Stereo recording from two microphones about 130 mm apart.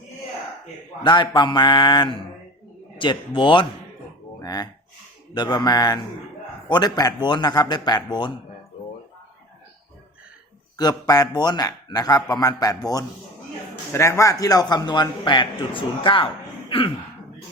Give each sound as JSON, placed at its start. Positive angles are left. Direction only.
{"t": 1.0, "sound": "speech", "side_deg": 35}
{"t": 10.8, "sound": "a man's voice", "side_deg": 30}
{"t": 16.6, "sound": "a sound", "side_deg": 45}